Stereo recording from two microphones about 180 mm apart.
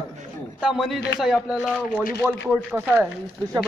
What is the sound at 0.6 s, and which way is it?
A man's voice, centre (ahead or behind).